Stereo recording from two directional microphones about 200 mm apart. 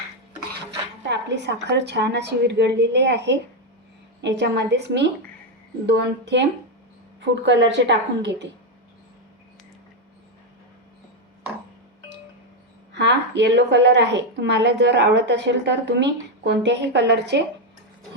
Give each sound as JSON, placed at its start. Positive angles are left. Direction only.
{"t": 1.0, "sound": "a woman's voice", "side_deg": -60}
{"t": 7.4, "sound": "a woman's voice", "side_deg": -65}
{"t": 12.9, "sound": "a woman's voice", "side_deg": -60}